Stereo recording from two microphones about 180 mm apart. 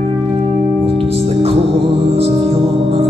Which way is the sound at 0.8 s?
35° right (ahead or behind).